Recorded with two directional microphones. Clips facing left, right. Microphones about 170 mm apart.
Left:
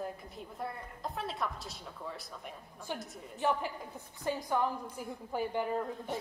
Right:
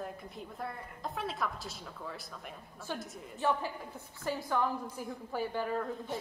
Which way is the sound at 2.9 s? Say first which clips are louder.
Right 1 dB; 15° left (ahead or behind).